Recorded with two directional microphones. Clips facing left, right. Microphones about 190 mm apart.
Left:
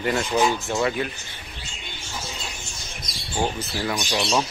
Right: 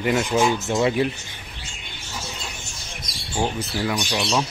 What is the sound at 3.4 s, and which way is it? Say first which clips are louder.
Speech: right 1 dB; 5° left (ahead or behind).